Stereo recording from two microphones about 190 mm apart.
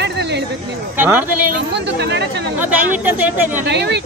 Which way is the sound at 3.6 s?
65° right (ahead or behind).